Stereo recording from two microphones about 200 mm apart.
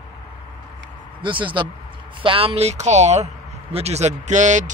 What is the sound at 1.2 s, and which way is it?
Speech, 25° right (ahead or behind).